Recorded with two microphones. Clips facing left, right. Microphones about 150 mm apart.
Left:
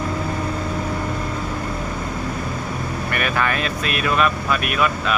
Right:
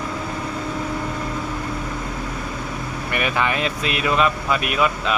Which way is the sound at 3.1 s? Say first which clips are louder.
Right 1 dB; 20° right (ahead or behind).